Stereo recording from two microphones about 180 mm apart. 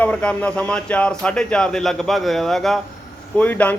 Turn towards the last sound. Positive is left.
turn(degrees=10)  # may be behind; listen again after turning